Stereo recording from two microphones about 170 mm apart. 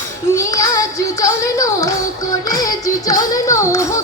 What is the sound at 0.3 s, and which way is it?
Music, 20° left (ahead or behind).